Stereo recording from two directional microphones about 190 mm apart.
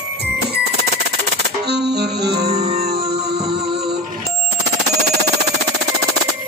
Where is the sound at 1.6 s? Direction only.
60° right (ahead or behind).